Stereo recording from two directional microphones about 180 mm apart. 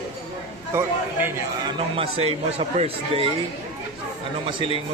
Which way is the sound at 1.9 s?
30° right (ahead or behind).